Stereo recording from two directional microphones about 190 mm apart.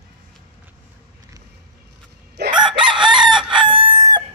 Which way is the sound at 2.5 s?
25° right (ahead or behind).